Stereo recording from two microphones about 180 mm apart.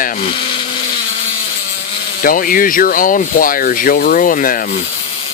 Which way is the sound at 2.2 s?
50° left (ahead or behind).